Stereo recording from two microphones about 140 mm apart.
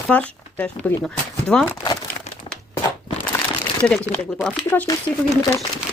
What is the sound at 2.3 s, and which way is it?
Crumpling, 50° left (ahead or behind).